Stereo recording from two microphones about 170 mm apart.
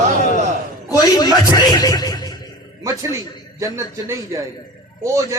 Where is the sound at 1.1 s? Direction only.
20° left (ahead or behind).